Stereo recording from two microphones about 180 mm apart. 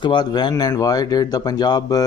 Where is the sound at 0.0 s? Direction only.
25° left (ahead or behind).